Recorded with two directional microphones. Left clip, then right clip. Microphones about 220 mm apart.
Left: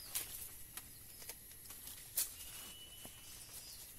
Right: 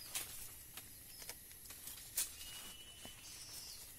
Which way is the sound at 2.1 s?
25° right (ahead or behind).